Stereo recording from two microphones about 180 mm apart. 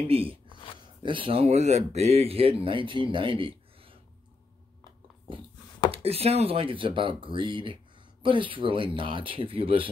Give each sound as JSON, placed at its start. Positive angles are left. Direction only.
{"t": 0.1, "sound": "speech", "side_deg": -30}
{"t": 5.9, "sound": "speech", "side_deg": -35}